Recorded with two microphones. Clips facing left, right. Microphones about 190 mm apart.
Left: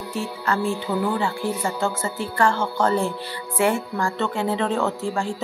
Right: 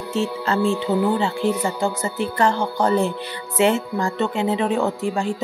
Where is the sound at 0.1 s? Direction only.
25° right (ahead or behind).